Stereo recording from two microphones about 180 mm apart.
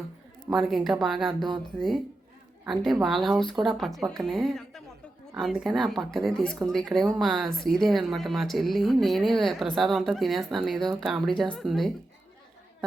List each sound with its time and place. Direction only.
0.5 s a woman's voice: centre (ahead or behind)
1.3 s speech: 25° right (ahead or behind)
2.6 s a woman's voice: centre (ahead or behind)